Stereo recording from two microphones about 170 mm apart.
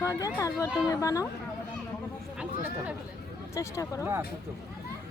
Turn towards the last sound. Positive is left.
turn(degrees=15)  # may be behind; listen again after turning